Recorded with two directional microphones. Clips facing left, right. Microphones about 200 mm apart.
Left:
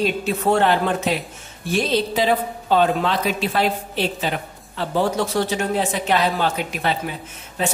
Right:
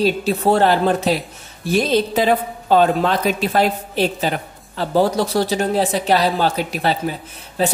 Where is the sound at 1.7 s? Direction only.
45° right (ahead or behind).